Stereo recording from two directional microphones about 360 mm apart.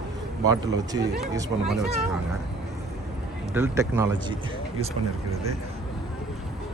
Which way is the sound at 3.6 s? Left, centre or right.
Centre.